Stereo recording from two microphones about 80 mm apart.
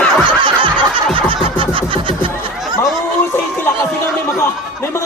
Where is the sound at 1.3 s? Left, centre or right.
Right.